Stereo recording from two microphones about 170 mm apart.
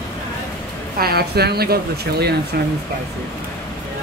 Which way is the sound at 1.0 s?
70° right (ahead or behind).